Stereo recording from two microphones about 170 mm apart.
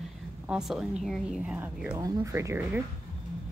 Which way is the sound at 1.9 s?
20° right (ahead or behind).